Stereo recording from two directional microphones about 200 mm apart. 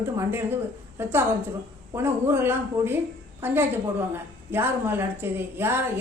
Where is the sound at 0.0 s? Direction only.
10° right (ahead or behind).